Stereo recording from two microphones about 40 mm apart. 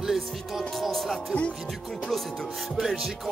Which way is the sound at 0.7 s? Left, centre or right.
Centre.